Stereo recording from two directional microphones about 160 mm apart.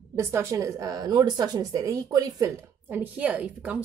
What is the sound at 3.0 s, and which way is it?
Speech, 10° right (ahead or behind).